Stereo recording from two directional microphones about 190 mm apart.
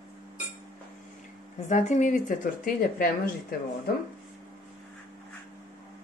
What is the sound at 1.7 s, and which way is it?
A woman's voice, 40° left (ahead or behind).